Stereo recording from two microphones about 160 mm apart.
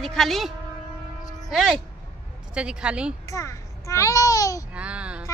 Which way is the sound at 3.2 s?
20° left (ahead or behind).